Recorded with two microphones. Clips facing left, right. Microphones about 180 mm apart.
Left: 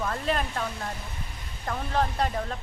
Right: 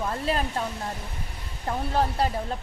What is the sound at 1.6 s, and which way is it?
Speech, 30° right (ahead or behind).